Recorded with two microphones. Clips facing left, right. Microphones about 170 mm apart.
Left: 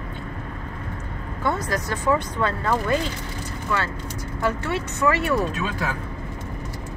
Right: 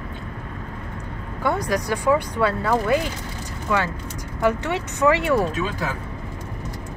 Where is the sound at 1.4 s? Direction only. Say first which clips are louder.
Right 2 dB; 15° right (ahead or behind).